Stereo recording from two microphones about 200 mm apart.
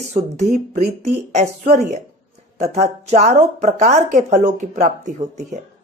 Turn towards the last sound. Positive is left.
turn(degrees=-35)  # may be behind; listen again after turning